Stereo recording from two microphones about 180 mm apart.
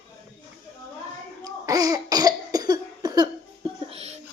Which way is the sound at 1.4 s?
20° right (ahead or behind).